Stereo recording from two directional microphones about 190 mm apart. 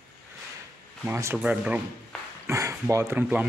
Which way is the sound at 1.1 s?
15° right (ahead or behind).